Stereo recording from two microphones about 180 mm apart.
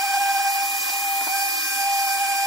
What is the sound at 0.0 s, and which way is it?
Steam, centre (ahead or behind).